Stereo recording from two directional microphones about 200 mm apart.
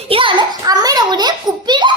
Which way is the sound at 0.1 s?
25° right (ahead or behind).